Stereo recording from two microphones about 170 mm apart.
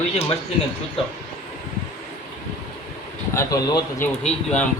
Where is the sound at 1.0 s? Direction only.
35° left (ahead or behind).